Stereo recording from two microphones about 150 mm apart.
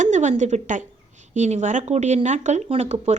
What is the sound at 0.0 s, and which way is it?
Speech, 55° right (ahead or behind).